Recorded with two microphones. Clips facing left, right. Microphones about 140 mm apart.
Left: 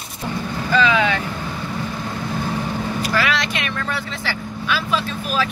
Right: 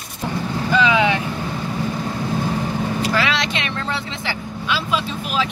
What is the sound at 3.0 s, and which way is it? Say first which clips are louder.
Speech: even; 25° right (ahead or behind).